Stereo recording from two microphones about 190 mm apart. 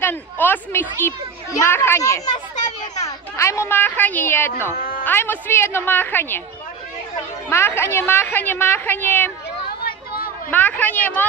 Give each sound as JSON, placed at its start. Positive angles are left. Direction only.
{"t": 0.0, "sound": "speech", "side_deg": 10}
{"t": 3.3, "sound": "speech", "side_deg": 15}
{"t": 7.4, "sound": "speech", "side_deg": 15}
{"t": 9.8, "sound": "a sound", "side_deg": 50}
{"t": 10.5, "sound": "speech", "side_deg": 10}